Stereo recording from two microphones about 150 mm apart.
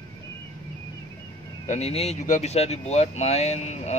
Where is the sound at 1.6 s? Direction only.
50° left (ahead or behind).